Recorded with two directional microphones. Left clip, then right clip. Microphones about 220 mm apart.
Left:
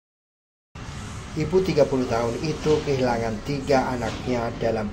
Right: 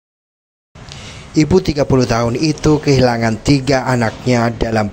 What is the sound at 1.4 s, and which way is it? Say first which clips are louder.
Speech: right 6 dB; 45° right (ahead or behind).